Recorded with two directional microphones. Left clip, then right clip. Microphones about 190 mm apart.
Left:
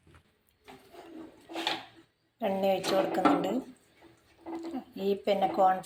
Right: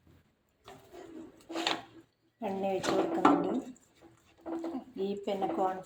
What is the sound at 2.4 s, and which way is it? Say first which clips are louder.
A woman's voice: left 5 dB; 15° left (ahead or behind).